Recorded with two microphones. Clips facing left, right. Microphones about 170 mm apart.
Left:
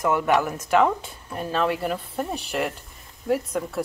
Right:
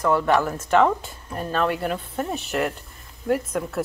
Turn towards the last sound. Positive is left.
turn(degrees=0)  # may be behind; listen again after turning